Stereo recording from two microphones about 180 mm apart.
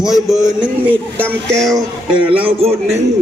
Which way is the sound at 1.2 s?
5° left (ahead or behind).